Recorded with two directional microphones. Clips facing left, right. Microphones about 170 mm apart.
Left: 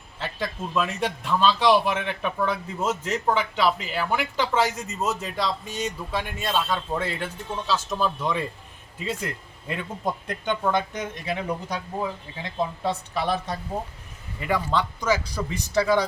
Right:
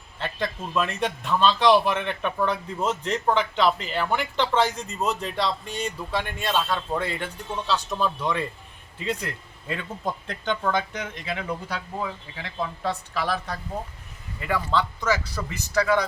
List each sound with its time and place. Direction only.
0.2 s speech: 5° left (ahead or behind); by 16.0 s 25° left (ahead or behind)